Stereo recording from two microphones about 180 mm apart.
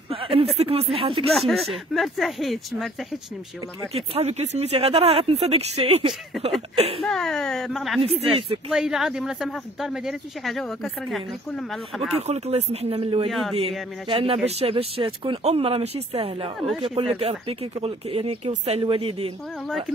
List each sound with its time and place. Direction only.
0.1 s speech: 30° right (ahead or behind)
1.3 s speech: centre (ahead or behind)
3.9 s speech: 35° right (ahead or behind)
7.0 s speech: centre (ahead or behind)
12.2 s speech: 35° right (ahead or behind)
13.3 s speech: centre (ahead or behind)
14.0 s speech: 30° right (ahead or behind)
16.5 s speech: centre (ahead or behind)
16.8 s speech: 30° right (ahead or behind)